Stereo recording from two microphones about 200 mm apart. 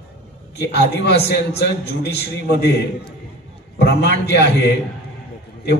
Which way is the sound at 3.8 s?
55° left (ahead or behind).